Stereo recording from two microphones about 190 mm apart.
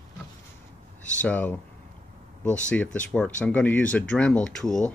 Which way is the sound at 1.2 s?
5° left (ahead or behind).